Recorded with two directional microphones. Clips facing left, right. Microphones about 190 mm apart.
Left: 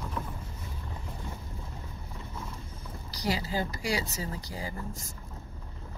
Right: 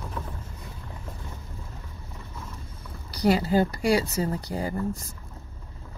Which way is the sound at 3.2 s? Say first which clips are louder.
Right 10 dB; 60° right (ahead or behind).